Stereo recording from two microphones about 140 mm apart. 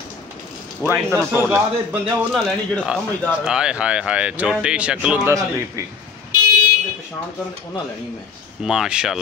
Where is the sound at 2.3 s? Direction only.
5° left (ahead or behind).